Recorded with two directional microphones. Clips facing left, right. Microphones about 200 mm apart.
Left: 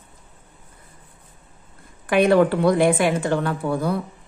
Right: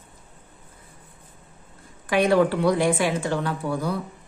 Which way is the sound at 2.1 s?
55° left (ahead or behind).